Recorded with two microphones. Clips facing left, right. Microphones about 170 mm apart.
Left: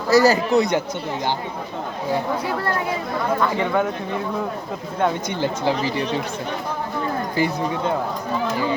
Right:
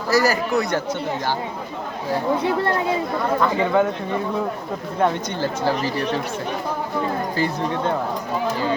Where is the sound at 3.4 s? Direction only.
5° right (ahead or behind).